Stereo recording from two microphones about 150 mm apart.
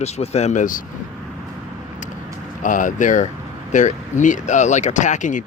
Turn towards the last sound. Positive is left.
turn(degrees=55)  # may be behind; listen again after turning